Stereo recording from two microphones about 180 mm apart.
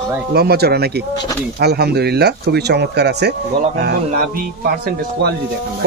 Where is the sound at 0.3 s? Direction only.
60° right (ahead or behind).